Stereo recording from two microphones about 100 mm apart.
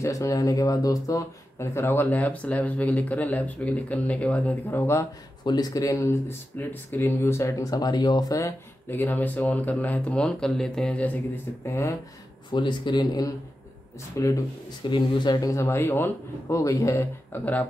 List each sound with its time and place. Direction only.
0.0 s speech: 30° left (ahead or behind); by 4.7 s 15° left (ahead or behind)
4.7 s speech: 30° left (ahead or behind)
5.4 s speech: 45° left (ahead or behind)
8.9 s speech: 20° left (ahead or behind)
11.6 s speech: 30° left (ahead or behind)
12.4 s speech: 50° left (ahead or behind)
14.1 s speech: 30° left (ahead or behind)
14.9 s speech: 50° left (ahead or behind); by 17.4 s 30° left (ahead or behind)